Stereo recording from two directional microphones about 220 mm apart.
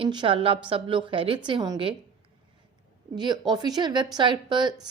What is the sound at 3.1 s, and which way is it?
Speech, 20° right (ahead or behind).